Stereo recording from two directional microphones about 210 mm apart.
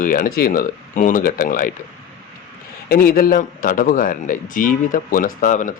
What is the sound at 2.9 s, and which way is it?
Speech, 45° left (ahead or behind).